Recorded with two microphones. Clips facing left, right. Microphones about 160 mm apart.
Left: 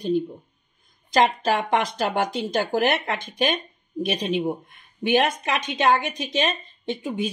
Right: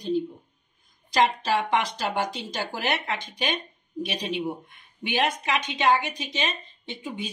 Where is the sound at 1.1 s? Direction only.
50° left (ahead or behind).